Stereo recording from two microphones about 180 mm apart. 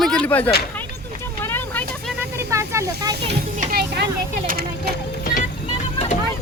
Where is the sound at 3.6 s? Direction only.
55° right (ahead or behind).